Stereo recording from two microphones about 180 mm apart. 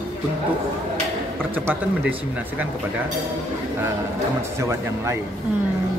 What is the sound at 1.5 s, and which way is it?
Speech, 10° right (ahead or behind).